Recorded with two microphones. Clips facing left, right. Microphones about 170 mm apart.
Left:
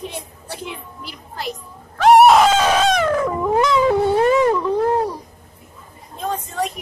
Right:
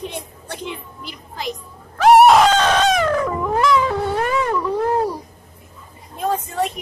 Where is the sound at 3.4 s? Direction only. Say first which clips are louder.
Left 3 dB; 20° left (ahead or behind).